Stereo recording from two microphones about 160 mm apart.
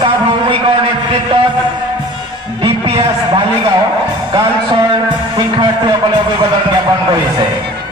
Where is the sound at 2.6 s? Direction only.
35° right (ahead or behind).